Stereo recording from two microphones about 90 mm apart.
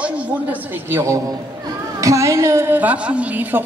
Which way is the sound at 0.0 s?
20° right (ahead or behind).